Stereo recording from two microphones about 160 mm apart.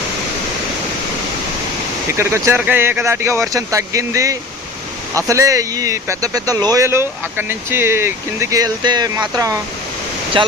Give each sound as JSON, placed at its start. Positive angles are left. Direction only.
{"t": 2.0, "sound": "speech", "side_deg": -15}
{"t": 10.4, "sound": "speech", "side_deg": -30}